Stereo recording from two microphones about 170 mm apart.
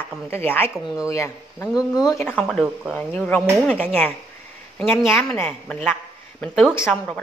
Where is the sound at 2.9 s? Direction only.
10° left (ahead or behind).